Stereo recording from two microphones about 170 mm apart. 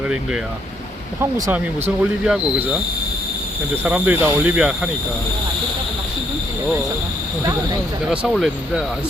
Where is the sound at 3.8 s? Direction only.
10° right (ahead or behind).